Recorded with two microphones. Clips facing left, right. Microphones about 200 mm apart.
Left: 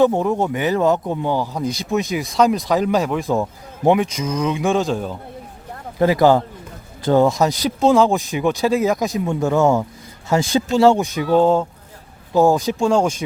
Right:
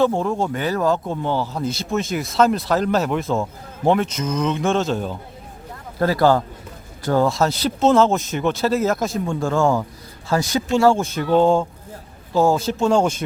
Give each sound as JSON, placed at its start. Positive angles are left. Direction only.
{"t": 0.0, "sound": "a man's voice", "side_deg": 15}
{"t": 2.1, "sound": "speech", "side_deg": 0}
{"t": 2.6, "sound": "a man's voice", "side_deg": 15}
{"t": 3.0, "sound": "speech", "side_deg": 0}
{"t": 3.2, "sound": "a man's voice", "side_deg": 15}
{"t": 6.0, "sound": "a man's voice", "side_deg": 15}
{"t": 7.8, "sound": "speech", "side_deg": 0}
{"t": 8.0, "sound": "a man's voice", "side_deg": 10}
{"t": 12.3, "sound": "a man's voice", "side_deg": 15}